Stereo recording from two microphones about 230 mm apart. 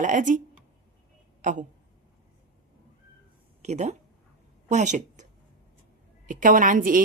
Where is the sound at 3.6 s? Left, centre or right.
Right.